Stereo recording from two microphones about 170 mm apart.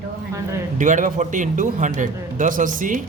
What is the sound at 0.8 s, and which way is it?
Speech, 50° right (ahead or behind).